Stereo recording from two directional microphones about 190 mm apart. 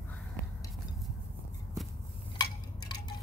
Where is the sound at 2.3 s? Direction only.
20° left (ahead or behind).